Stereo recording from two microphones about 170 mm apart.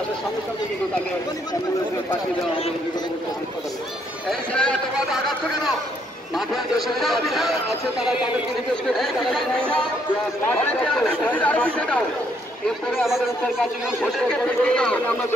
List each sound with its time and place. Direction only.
4.3 s a man's voice: 5° left (ahead or behind)
8.9 s a man's voice: centre (ahead or behind)
10.5 s speech: 5° left (ahead or behind)
14.0 s a man's voice: 5° left (ahead or behind)